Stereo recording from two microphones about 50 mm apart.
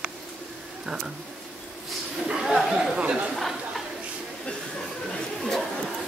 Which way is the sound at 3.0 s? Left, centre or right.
Right.